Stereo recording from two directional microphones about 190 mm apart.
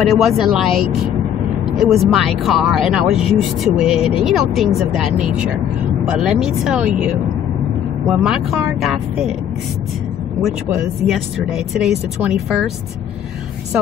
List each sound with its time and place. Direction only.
0.1 s speech: centre (ahead or behind)
8.2 s speech: centre (ahead or behind)
11.1 s speech: centre (ahead or behind)